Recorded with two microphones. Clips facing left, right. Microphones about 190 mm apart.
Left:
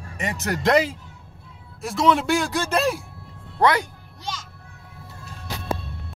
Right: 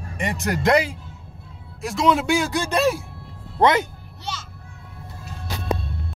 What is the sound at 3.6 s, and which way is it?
Speech, 20° right (ahead or behind).